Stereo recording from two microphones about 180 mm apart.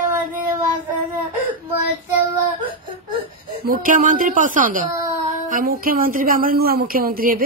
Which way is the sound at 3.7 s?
50° right (ahead or behind).